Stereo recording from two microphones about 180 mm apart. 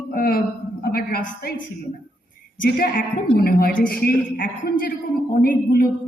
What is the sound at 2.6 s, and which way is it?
A woman's voice, 55° left (ahead or behind).